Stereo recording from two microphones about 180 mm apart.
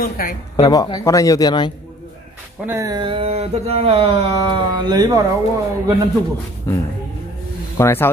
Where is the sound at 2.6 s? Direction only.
15° right (ahead or behind).